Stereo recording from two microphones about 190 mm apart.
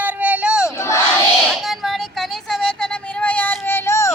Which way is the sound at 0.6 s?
15° left (ahead or behind).